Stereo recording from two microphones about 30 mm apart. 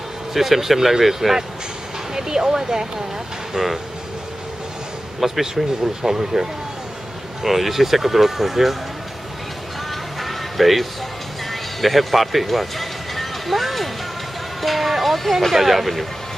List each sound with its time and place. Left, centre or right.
0.3 s speech: centre
3.5 s speech: centre
5.2 s speech: centre
7.4 s speech: centre
10.2 s music: centre
11.8 s speech: centre
14.6 s music: centre
15.5 s speech: centre